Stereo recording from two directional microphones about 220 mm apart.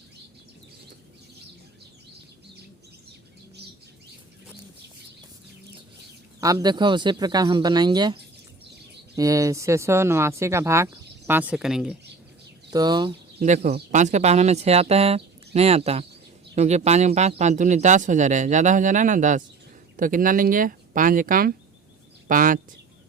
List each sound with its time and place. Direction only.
3.6 s bird: 50° right (ahead or behind)
6.4 s speech: 15° right (ahead or behind)
12.7 s speech: 20° right (ahead or behind)
13.4 s speech: 30° right (ahead or behind)